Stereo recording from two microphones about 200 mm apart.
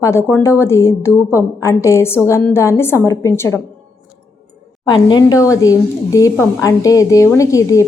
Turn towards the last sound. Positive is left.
turn(degrees=15)  # may be behind; listen again after turning